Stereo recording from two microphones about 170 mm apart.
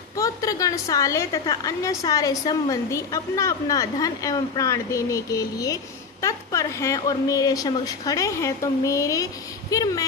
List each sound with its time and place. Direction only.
0.2 s a woman's voice: 20° left (ahead or behind)